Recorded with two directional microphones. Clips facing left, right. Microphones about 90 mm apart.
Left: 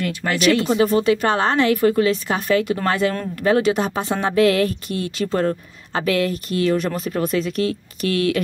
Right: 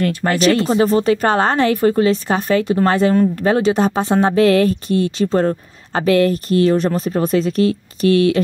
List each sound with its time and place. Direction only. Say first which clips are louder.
0.0 s speech: right 4 dB; 40° right (ahead or behind)